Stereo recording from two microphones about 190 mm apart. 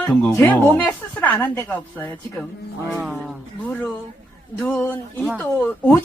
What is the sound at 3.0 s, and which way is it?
Speech, centre (ahead or behind).